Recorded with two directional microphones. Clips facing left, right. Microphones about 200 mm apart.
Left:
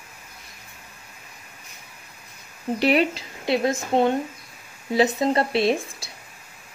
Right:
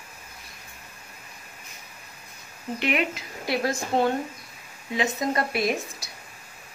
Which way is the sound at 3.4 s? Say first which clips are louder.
Left 4 dB; 20° left (ahead or behind).